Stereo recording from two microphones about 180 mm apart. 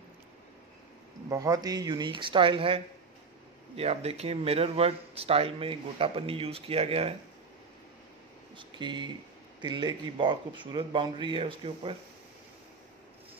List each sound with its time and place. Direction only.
1.3 s a man's voice: 20° right (ahead or behind)
8.5 s a man's voice: 25° right (ahead or behind)